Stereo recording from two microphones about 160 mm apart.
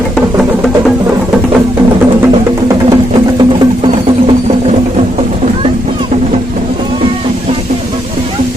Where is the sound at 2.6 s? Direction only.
25° right (ahead or behind).